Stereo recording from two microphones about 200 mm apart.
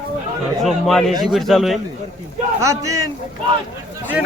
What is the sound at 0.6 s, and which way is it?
A man's voice, centre (ahead or behind).